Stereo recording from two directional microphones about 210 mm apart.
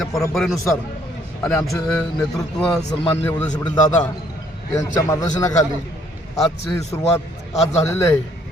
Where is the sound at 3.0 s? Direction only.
25° left (ahead or behind).